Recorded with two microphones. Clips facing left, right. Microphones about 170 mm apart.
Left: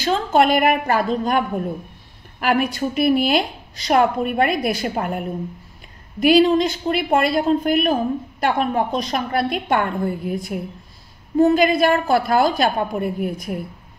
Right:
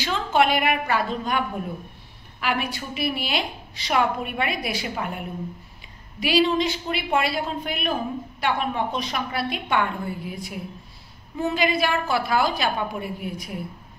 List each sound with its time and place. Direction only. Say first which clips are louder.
0.0 s a woman's voice: left 5 dB; 40° left (ahead or behind)
2.4 s a woman's voice: left 8 dB; 45° left (ahead or behind)